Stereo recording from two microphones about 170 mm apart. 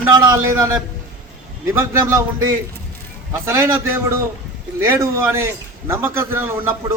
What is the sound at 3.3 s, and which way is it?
A man's voice, 15° right (ahead or behind).